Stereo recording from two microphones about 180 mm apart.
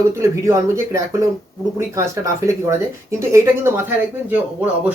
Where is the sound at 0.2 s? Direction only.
15° right (ahead or behind).